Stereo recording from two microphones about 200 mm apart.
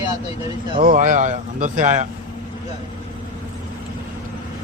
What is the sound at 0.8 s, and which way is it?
Speech, 40° right (ahead or behind).